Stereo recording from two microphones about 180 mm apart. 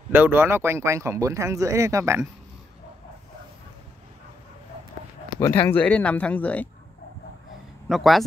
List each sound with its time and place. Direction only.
0.1 s speech: 10° right (ahead or behind)
5.7 s speech: 10° left (ahead or behind)
7.9 s speech: centre (ahead or behind)